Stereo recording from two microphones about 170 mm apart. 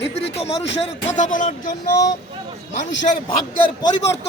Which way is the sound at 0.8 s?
45° left (ahead or behind).